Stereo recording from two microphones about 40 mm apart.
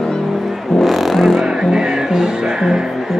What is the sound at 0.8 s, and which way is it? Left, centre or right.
Music, centre.